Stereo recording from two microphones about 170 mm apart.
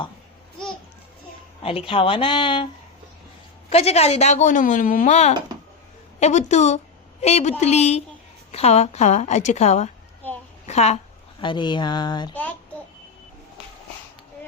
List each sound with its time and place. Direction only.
1.6 s speech: 30° left (ahead or behind)
3.7 s a woman's voice: 35° left (ahead or behind)
10.2 s a sound: 10° left (ahead or behind)
10.7 s speech: 40° left (ahead or behind)
11.3 s speech: 30° left (ahead or behind)